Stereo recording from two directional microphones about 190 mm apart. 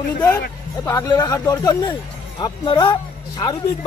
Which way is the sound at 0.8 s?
15° left (ahead or behind).